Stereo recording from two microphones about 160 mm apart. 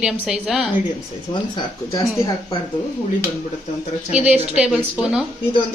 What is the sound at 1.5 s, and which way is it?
Speech, 25° left (ahead or behind).